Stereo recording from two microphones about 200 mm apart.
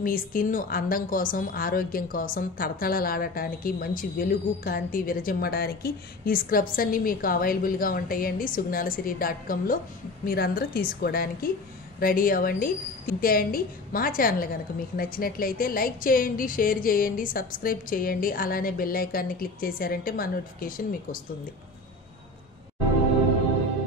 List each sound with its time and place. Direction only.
0.0 s a woman's voice: 45° left (ahead or behind)